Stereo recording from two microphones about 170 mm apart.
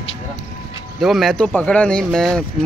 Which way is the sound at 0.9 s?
Centre (ahead or behind).